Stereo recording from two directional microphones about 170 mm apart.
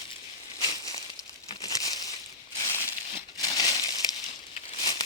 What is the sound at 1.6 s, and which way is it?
Crumpling, 20° left (ahead or behind).